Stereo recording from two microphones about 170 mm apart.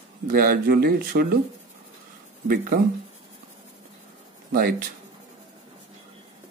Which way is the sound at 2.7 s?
65° right (ahead or behind).